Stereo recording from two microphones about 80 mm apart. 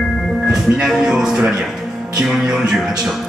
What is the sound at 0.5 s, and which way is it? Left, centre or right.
Speech, centre.